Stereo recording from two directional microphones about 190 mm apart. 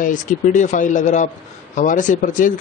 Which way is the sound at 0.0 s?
40° left (ahead or behind).